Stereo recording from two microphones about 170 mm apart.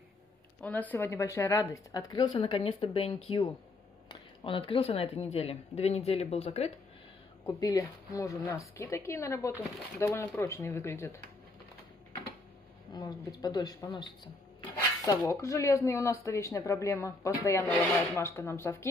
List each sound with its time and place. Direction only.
0.6 s a woman's voice: 10° left (ahead or behind); by 6.7 s 35° left (ahead or behind)
7.4 s speech: 20° left (ahead or behind)
12.9 s a woman's voice: 20° left (ahead or behind)